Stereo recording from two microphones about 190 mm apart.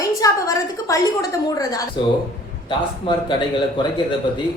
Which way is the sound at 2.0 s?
25° left (ahead or behind).